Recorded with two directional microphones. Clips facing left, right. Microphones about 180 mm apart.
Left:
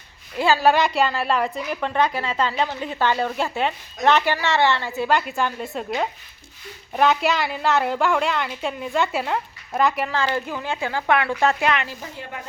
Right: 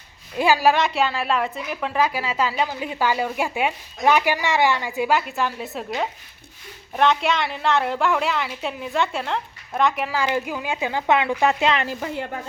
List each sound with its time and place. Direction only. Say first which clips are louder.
0.3 s a woman's voice: even; 15° right (ahead or behind)
0.7 s a woman's voice: left 1 dB; centre (ahead or behind)
5.2 s a woman's voice: left 1 dB; centre (ahead or behind); by 11.8 s 20° right (ahead or behind)
11.9 s a woman's voice: right 8 dB; 75° right (ahead or behind)